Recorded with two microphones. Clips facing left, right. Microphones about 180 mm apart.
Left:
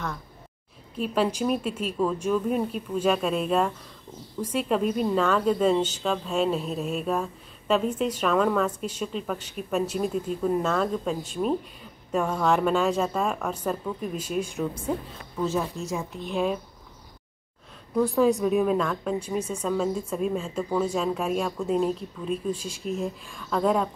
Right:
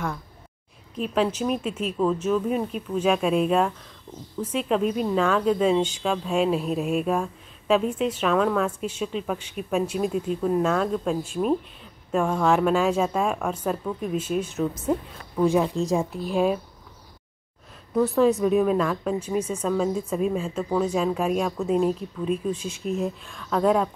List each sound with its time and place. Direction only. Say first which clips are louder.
0.9 s speech: right 1 dB; 5° left (ahead or behind)
15.4 s speech: right 6 dB; 15° right (ahead or behind)
15.8 s speech: right 7 dB; 35° right (ahead or behind)
17.9 s speech: right 2 dB; centre (ahead or behind)